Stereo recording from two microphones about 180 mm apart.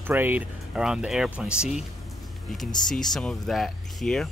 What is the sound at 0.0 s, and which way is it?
Speech, 10° right (ahead or behind).